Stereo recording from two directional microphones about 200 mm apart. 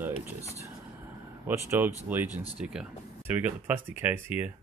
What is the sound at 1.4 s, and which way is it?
Speech, 10° right (ahead or behind).